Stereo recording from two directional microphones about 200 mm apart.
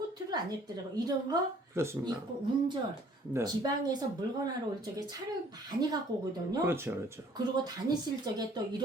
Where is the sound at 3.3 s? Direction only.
20° right (ahead or behind).